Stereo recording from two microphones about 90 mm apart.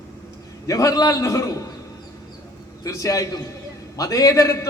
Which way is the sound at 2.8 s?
35° left (ahead or behind).